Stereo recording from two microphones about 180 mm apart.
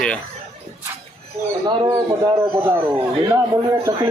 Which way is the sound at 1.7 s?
20° right (ahead or behind).